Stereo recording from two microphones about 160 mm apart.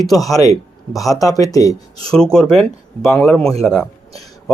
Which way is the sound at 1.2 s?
20° left (ahead or behind).